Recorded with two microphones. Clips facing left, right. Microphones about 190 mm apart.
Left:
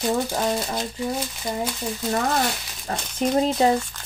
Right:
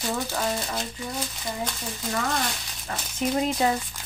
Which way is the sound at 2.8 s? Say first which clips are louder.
Left 4 dB; 35° left (ahead or behind).